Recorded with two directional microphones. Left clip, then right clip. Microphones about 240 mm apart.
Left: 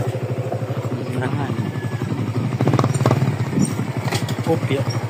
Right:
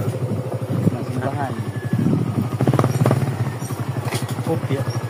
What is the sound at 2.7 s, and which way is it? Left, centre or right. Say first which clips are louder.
Vehicle: even; left.